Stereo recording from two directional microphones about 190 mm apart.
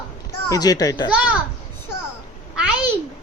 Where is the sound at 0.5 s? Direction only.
20° left (ahead or behind).